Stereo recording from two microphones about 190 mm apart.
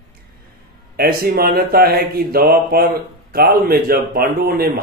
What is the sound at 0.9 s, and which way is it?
Speech, 55° right (ahead or behind).